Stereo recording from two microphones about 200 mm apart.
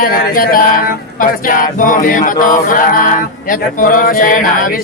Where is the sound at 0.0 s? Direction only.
45° left (ahead or behind).